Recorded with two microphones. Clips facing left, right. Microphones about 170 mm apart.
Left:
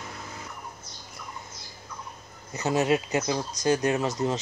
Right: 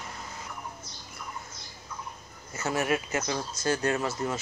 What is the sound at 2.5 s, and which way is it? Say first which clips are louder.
Speech: left 4 dB; 20° left (ahead or behind).